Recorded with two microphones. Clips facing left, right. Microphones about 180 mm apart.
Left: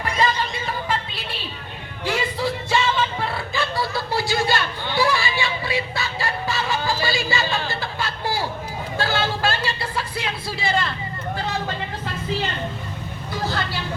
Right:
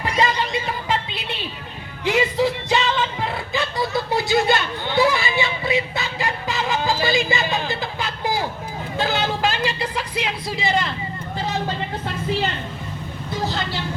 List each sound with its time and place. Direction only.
2.0 s music: 20° right (ahead or behind)
13.4 s speech: 20° right (ahead or behind)